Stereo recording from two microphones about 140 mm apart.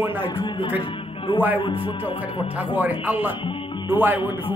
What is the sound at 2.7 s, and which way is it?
Speech, 10° right (ahead or behind).